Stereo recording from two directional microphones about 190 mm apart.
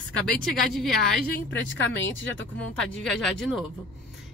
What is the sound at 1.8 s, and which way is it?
Speech, 80° left.